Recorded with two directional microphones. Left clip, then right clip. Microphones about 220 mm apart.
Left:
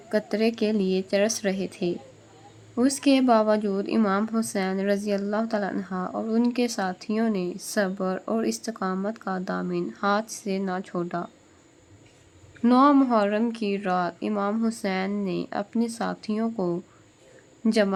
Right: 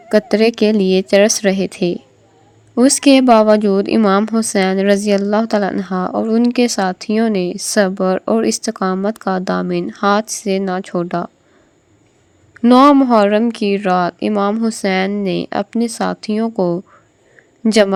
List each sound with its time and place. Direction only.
0.1 s a woman's voice: 35° right (ahead or behind)
12.6 s a woman's voice: 35° right (ahead or behind)